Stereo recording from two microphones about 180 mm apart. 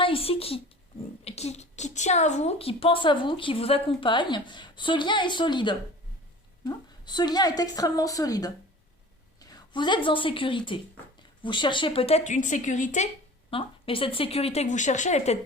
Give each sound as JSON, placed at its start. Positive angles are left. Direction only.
{"t": 0.0, "sound": "a woman's voice", "side_deg": 30}
{"t": 13.5, "sound": "a woman's voice", "side_deg": 30}